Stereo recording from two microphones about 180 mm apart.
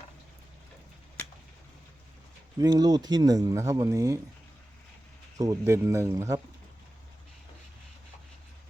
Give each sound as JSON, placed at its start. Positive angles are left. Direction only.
{"t": 2.6, "sound": "speech", "side_deg": -20}
{"t": 5.4, "sound": "speech", "side_deg": -15}